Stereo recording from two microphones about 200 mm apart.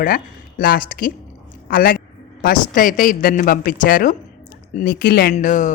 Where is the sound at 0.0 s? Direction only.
45° left (ahead or behind).